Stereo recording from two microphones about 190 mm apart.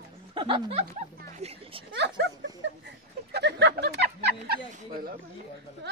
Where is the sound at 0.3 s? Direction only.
25° right (ahead or behind).